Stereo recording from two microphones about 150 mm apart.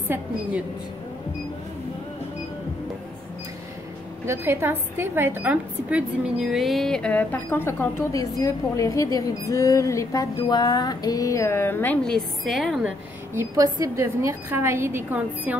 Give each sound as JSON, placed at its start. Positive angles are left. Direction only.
{"t": 4.3, "sound": "a woman's voice", "side_deg": -15}
{"t": 8.4, "sound": "music", "side_deg": 25}
{"t": 13.3, "sound": "a woman's voice", "side_deg": -20}